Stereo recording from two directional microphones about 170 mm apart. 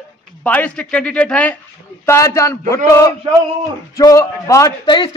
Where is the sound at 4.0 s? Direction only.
20° left (ahead or behind).